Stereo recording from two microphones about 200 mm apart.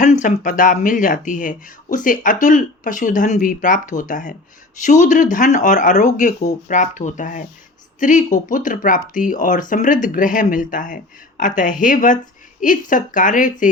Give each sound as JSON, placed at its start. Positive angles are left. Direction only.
{"t": 0.0, "sound": "speech", "side_deg": 40}